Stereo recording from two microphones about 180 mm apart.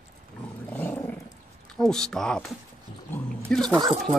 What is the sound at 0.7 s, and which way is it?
Roaring cats, 10° left (ahead or behind).